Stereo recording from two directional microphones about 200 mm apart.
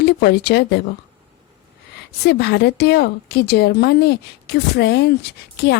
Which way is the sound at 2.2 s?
55° left (ahead or behind).